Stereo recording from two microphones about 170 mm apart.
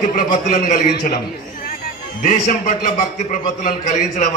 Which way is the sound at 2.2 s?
50° left (ahead or behind).